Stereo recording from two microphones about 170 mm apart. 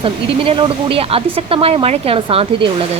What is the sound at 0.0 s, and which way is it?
Speech, 30° right (ahead or behind).